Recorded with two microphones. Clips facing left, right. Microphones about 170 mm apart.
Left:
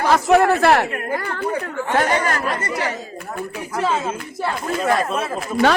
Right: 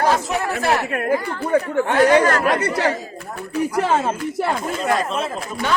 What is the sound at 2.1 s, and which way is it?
Speech, 65° right (ahead or behind).